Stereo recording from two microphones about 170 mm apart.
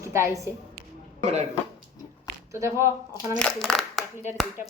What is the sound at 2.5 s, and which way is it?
Speech, 15° right (ahead or behind).